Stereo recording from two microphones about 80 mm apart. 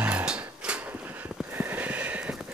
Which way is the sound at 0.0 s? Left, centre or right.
Centre.